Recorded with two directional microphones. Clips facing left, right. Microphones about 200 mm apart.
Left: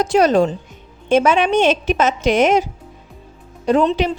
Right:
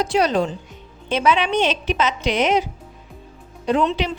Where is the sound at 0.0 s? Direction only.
45° left (ahead or behind).